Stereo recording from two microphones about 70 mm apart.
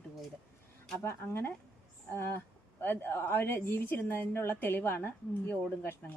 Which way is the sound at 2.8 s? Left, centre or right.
Left.